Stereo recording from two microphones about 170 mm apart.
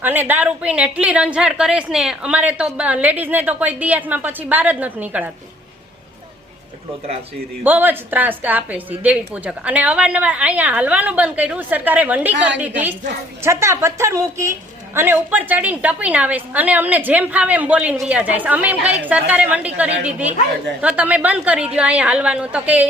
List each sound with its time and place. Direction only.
0.0 s a woman's voice: 10° right (ahead or behind)
7.6 s a woman's voice: 10° right (ahead or behind)